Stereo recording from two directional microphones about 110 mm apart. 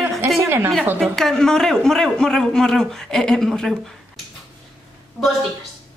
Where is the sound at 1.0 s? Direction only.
5° left (ahead or behind).